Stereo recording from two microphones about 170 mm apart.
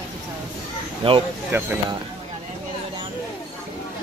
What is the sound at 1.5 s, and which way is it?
Speech, 15° right (ahead or behind).